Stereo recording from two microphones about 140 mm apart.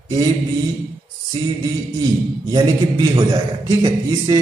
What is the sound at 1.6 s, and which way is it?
A man's voice, 30° right (ahead or behind).